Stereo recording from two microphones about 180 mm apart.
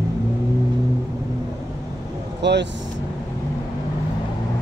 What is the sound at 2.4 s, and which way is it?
Speech, 75° right (ahead or behind).